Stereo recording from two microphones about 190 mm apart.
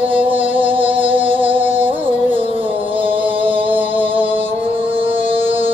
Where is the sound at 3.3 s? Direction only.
30° right (ahead or behind).